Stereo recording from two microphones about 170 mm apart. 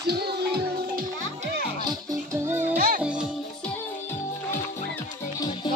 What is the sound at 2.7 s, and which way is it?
Music, 55° right (ahead or behind).